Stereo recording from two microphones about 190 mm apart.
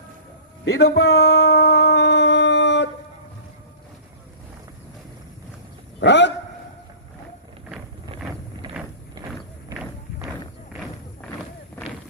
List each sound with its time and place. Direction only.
0.6 s speech: 55° left (ahead or behind); by 1.5 s 90° left
1.5 s howl: 55° left (ahead or behind)
6.0 s speech: 65° left (ahead or behind)
9.2 s a sound: 20° right (ahead or behind)
10.7 s thump: centre (ahead or behind)